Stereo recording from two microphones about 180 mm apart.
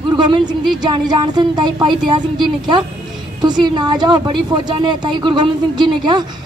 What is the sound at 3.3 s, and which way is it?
A woman's voice, 25° right (ahead or behind).